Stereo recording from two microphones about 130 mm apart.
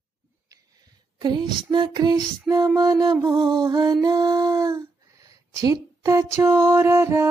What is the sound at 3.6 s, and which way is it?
Female singing, 30° right (ahead or behind).